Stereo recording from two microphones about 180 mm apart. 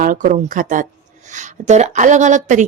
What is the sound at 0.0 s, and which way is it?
A woman's voice, 45° right (ahead or behind).